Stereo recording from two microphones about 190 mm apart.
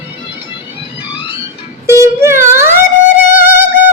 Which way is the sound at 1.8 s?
15° right (ahead or behind).